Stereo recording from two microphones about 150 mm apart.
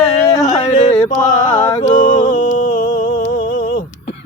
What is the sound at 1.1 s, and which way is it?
Music, 55° left (ahead or behind).